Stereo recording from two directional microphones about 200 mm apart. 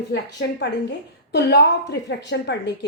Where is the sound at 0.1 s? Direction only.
60° left (ahead or behind).